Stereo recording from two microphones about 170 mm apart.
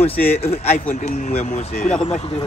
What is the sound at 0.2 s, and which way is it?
Speech, 60° left (ahead or behind).